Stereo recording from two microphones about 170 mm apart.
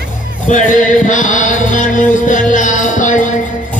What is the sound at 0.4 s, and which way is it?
Music, 45° left (ahead or behind).